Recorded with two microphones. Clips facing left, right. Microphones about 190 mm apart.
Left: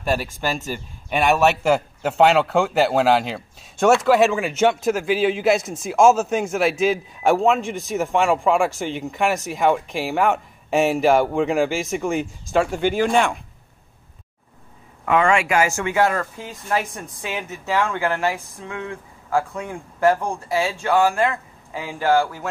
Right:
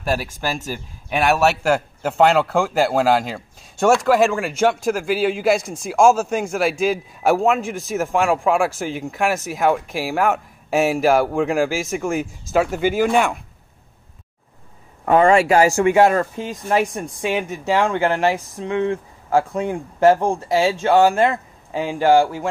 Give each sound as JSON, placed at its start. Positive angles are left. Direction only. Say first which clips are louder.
{"t": 0.0, "sound": "a man's voice", "louder": "even", "side_deg": -5}
{"t": 15.0, "sound": "speech", "louder": "right 5 dB", "side_deg": -35}
{"t": 17.4, "sound": "speech", "louder": "right 2 dB", "side_deg": -30}